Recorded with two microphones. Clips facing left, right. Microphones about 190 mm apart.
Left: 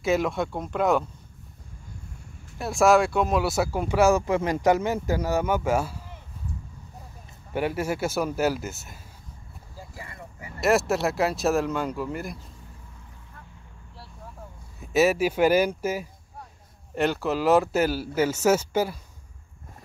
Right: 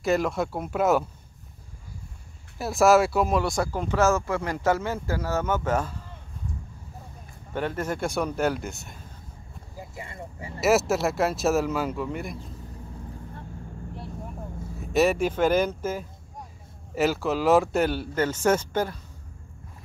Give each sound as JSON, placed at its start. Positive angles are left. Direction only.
{"t": 0.0, "sound": "speech", "side_deg": 0}
{"t": 2.6, "sound": "speech", "side_deg": 0}
{"t": 7.5, "sound": "speech", "side_deg": 10}
{"t": 9.8, "sound": "a sound", "side_deg": -25}
{"t": 10.6, "sound": "speech", "side_deg": 0}
{"t": 13.9, "sound": "vehicle", "side_deg": -20}
{"t": 14.8, "sound": "speech", "side_deg": 0}
{"t": 16.9, "sound": "speech", "side_deg": 0}